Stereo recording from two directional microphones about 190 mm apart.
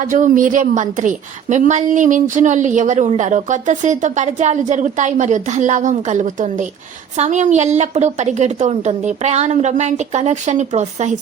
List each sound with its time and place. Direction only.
0.0 s a woman's voice: 40° right (ahead or behind)